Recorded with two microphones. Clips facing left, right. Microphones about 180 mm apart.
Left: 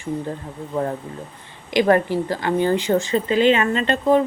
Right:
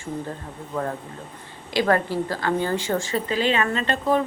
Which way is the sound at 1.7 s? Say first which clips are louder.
Left 4 dB; 20° left (ahead or behind).